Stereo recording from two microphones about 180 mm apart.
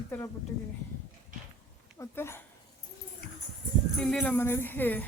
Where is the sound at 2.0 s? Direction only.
15° left (ahead or behind).